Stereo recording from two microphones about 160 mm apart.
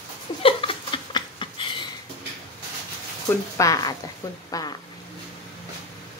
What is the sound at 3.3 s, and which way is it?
Speech, 20° left (ahead or behind).